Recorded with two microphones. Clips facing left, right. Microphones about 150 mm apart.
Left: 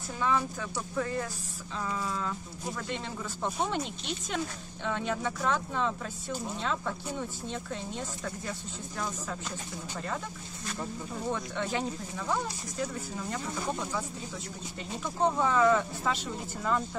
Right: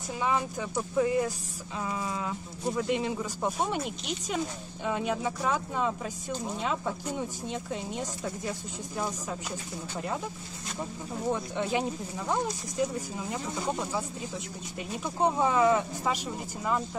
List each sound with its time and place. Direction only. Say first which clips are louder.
0.2 s speech: even; 15° right (ahead or behind)
15.0 s speech: right 1 dB; 15° right (ahead or behind)